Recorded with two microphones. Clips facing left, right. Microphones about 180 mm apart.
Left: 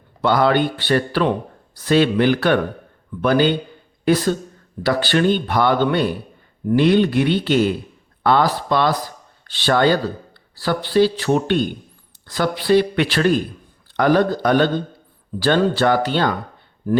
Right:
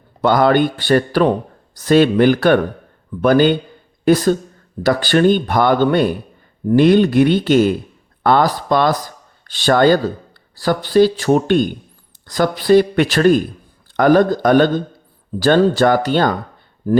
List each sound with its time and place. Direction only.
0.2 s speech: 45° right (ahead or behind)